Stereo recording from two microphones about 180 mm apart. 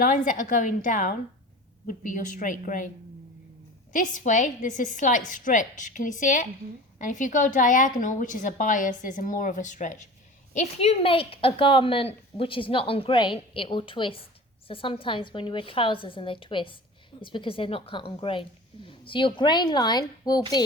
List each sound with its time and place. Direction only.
0.0 s a woman's voice: 45° left (ahead or behind)
3.9 s a woman's voice: 45° left (ahead or behind); by 20.4 s 20° left (ahead or behind)